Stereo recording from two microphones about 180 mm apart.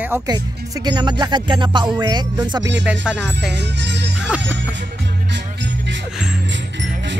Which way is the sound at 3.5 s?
75° right (ahead or behind).